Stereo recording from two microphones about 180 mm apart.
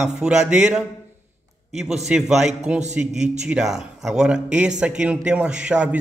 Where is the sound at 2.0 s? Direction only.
Centre (ahead or behind).